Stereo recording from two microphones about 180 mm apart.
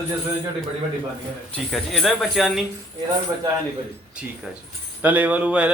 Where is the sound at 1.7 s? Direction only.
Centre (ahead or behind).